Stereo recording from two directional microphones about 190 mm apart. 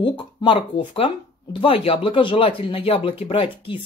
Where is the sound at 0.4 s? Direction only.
25° left (ahead or behind).